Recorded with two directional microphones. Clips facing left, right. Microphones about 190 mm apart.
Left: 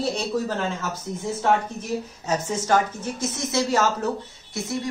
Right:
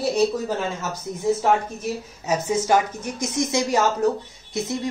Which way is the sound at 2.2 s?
10° right (ahead or behind).